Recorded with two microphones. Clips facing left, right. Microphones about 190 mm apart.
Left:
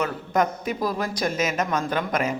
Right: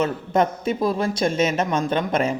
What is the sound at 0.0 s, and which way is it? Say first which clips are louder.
Speech: right 3 dB; 25° right (ahead or behind).